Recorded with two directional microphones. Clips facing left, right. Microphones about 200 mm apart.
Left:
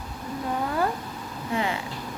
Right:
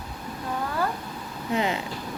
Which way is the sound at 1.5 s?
20° right (ahead or behind).